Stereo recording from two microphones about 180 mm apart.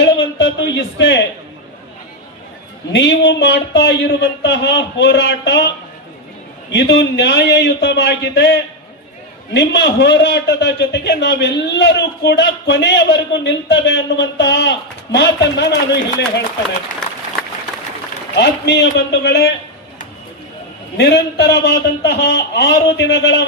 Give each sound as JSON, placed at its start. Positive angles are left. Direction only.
{"t": 0.0, "sound": "a sound", "side_deg": 75}
{"t": 2.9, "sound": "a man's voice", "side_deg": 75}
{"t": 6.7, "sound": "a man's voice", "side_deg": 70}
{"t": 18.3, "sound": "a man's voice", "side_deg": 70}
{"t": 21.0, "sound": "a man's voice", "side_deg": 65}